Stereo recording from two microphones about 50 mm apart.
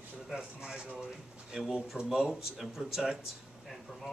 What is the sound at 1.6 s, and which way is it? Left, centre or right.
Speech, centre.